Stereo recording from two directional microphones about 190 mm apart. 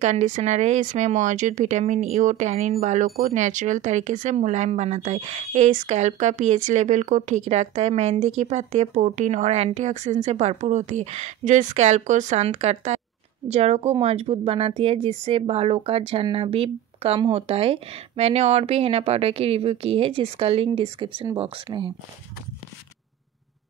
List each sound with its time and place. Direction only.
0.0 s speech: 40° right (ahead or behind)